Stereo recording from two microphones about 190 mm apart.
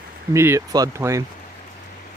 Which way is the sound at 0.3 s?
15° right (ahead or behind).